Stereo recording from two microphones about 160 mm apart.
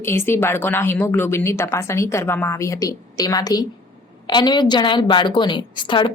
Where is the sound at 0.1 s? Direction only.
15° left (ahead or behind).